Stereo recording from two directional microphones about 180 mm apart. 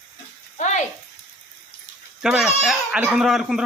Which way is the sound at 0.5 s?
40° left (ahead or behind).